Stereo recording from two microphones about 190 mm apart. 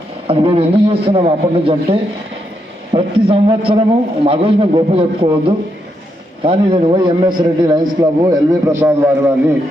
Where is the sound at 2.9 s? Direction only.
30° right (ahead or behind).